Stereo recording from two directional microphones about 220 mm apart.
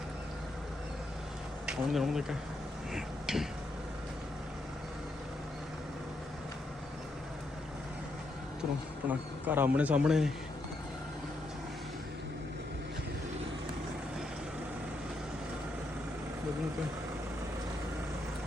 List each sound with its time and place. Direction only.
1.6 s speech: centre (ahead or behind)
2.9 s a sound: centre (ahead or behind)
9.0 s speech: 10° right (ahead or behind)